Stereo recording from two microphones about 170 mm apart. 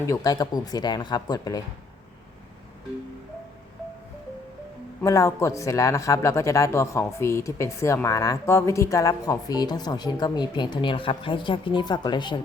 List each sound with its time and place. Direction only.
0.0 s a woman's voice: 20° left (ahead or behind)
5.0 s a woman's voice: 20° left (ahead or behind)